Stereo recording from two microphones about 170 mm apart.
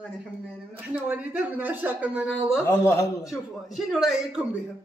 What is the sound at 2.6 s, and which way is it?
Speech, 15° left (ahead or behind).